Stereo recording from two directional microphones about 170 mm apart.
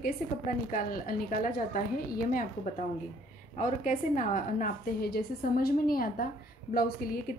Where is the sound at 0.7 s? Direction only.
55° left (ahead or behind).